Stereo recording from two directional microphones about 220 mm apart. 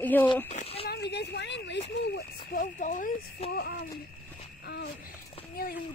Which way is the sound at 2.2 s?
35° left (ahead or behind).